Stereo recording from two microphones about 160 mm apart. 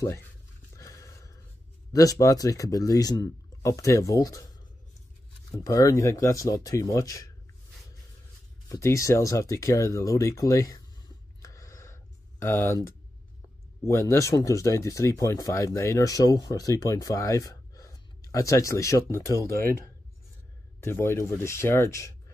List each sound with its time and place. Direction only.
0.7 s a sound: 20° left (ahead or behind)
1.9 s speech: 20° left (ahead or behind)
5.6 s speech: 20° left (ahead or behind)
8.6 s speech: 20° left (ahead or behind)
11.4 s a sound: 20° left (ahead or behind)
13.8 s speech: 20° left (ahead or behind)
20.8 s speech: 15° left (ahead or behind)